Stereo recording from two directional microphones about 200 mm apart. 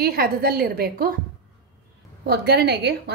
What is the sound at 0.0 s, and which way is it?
A woman's voice, 50° right (ahead or behind).